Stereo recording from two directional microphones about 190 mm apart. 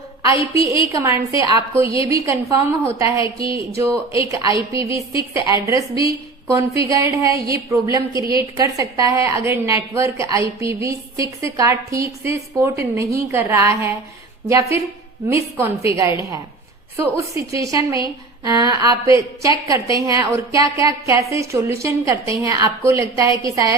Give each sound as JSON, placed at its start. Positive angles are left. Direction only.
{"t": 0.3, "sound": "a woman's voice", "side_deg": -15}